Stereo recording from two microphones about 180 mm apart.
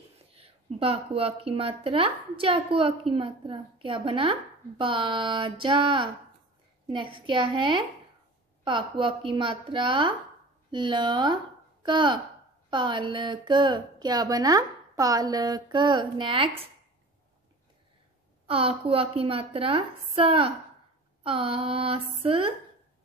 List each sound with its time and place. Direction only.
0.4 s speech: 30° right (ahead or behind)
18.5 s a woman's voice: 30° right (ahead or behind)